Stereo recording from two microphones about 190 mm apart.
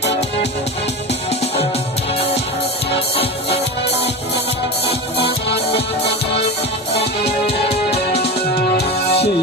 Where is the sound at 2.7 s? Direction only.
60° left (ahead or behind).